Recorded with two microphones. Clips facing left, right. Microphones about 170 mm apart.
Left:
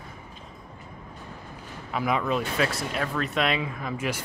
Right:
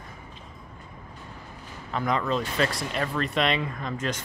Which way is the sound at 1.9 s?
5° left (ahead or behind).